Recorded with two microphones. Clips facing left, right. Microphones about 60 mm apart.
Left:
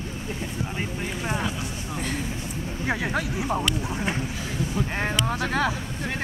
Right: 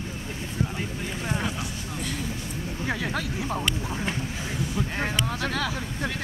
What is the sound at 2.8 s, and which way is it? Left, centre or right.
Speech, centre.